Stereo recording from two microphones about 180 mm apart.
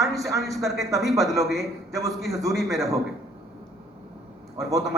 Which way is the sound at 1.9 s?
20° right (ahead or behind).